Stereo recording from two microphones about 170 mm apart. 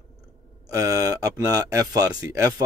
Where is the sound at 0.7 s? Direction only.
20° right (ahead or behind).